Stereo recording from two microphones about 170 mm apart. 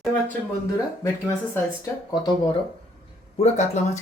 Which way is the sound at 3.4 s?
45° left (ahead or behind).